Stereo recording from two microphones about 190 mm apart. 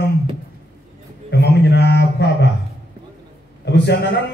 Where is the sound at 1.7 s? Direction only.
65° left (ahead or behind).